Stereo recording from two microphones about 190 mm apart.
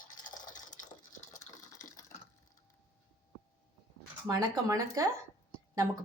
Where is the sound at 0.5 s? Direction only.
45° left (ahead or behind).